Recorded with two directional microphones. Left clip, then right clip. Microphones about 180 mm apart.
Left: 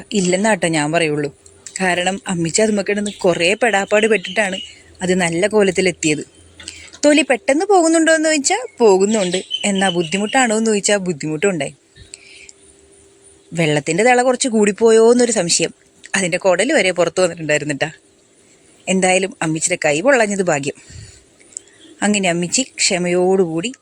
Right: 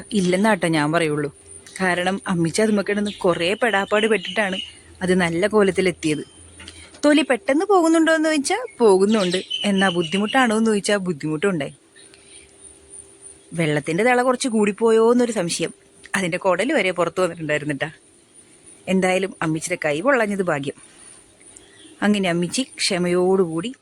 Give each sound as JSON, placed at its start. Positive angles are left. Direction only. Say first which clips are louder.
{"t": 0.0, "sound": "speech", "louder": "left 3 dB", "side_deg": 5}
{"t": 13.6, "sound": "speech", "louder": "left 5 dB", "side_deg": 15}
{"t": 21.9, "sound": "speech", "louder": "left 4 dB", "side_deg": 15}